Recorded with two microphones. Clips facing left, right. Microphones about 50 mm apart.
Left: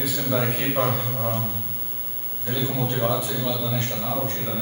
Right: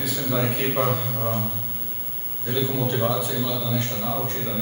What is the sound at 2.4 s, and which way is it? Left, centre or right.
A man's voice, centre.